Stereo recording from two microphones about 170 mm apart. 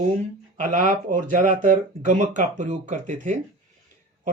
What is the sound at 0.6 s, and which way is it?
Speech, 50° right (ahead or behind).